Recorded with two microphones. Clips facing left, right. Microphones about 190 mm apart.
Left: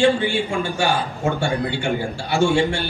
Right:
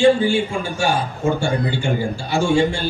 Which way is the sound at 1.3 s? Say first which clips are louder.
Right 1 dB; 65° left (ahead or behind).